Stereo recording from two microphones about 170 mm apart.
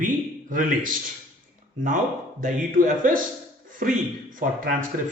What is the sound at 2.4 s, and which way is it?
Speech, 55° right (ahead or behind).